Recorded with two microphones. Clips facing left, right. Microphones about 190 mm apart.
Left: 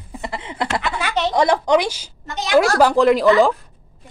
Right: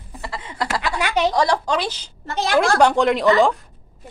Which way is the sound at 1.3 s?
20° left (ahead or behind).